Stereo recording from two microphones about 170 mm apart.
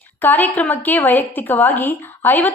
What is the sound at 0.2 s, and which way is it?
A woman's voice, 10° left (ahead or behind).